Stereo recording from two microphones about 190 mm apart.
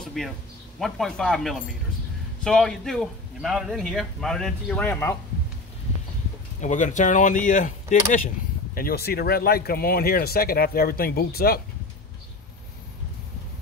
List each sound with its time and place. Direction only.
0.0 s a sound: centre (ahead or behind)
0.7 s a man's voice: centre (ahead or behind)
6.6 s speech: 40° left (ahead or behind)
8.7 s speech: 55° left (ahead or behind)